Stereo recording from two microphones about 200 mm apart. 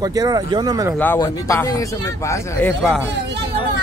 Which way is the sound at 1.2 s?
15° left (ahead or behind).